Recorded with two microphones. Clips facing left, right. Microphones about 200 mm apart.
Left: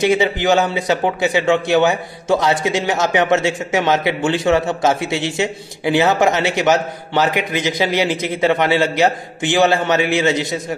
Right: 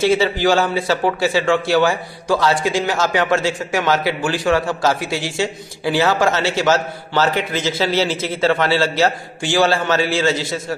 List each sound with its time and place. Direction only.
0.0 s speech: 20° left (ahead or behind)